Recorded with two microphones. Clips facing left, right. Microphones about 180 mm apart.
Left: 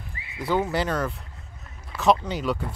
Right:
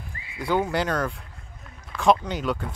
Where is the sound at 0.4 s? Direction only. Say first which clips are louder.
Even; 5° left (ahead or behind).